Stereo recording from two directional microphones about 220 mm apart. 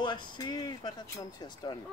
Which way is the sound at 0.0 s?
20° left (ahead or behind).